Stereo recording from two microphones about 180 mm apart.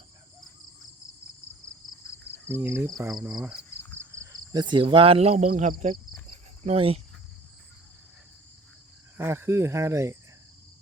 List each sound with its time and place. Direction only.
2.5 s speech: 15° right (ahead or behind)
4.1 s speech: 20° right (ahead or behind)
9.1 s speech: 15° right (ahead or behind)